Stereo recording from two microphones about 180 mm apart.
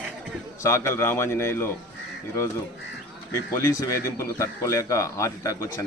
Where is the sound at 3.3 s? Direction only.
15° left (ahead or behind).